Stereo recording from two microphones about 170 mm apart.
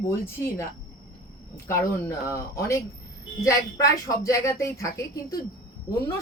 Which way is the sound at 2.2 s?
15° left (ahead or behind).